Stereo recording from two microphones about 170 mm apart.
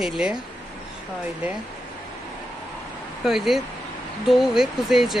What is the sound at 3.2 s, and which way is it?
Speech, centre (ahead or behind).